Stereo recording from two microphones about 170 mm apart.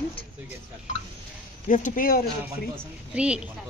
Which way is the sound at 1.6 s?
50° left (ahead or behind).